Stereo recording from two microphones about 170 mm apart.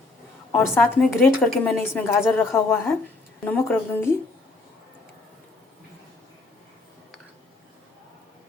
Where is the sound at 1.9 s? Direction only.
15° left (ahead or behind).